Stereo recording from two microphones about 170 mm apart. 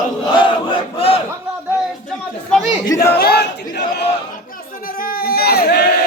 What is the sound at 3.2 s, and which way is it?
Battle cry, 65° left (ahead or behind).